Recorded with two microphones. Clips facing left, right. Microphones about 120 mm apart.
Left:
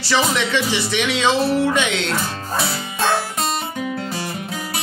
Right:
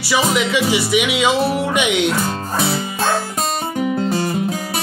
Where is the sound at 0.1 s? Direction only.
10° right (ahead or behind).